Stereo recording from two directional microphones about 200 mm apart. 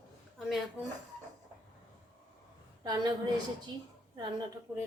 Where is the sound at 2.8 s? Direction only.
20° right (ahead or behind).